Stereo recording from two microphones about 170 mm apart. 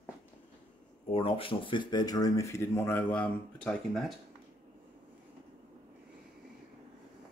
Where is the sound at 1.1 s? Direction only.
35° left (ahead or behind); by 4.2 s centre (ahead or behind).